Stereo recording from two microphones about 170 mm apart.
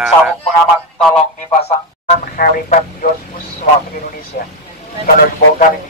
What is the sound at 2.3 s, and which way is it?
Speech, 55° left (ahead or behind).